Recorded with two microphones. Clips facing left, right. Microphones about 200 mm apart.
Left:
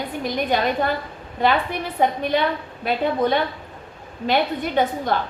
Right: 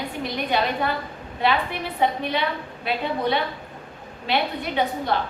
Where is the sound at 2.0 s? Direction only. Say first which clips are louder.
Left 3 dB; 45° left (ahead or behind).